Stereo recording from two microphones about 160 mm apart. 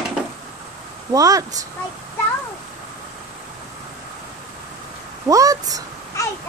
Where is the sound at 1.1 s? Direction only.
20° right (ahead or behind).